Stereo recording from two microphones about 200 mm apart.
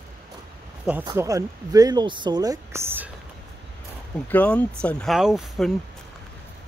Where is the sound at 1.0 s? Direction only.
20° right (ahead or behind).